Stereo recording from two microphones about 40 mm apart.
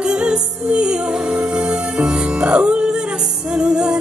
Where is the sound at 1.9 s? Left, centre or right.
Right.